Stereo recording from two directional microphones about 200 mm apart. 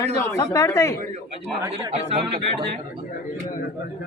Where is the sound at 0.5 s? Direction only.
15° left (ahead or behind).